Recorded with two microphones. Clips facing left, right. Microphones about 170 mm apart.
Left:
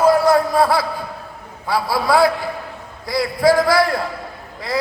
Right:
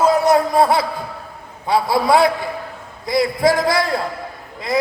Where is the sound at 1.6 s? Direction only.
20° right (ahead or behind).